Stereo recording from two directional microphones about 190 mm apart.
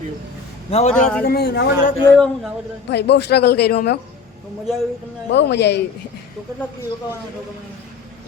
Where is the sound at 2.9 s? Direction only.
60° left (ahead or behind).